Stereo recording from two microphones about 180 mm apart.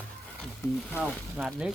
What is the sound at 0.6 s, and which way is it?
Speech, 15° left (ahead or behind).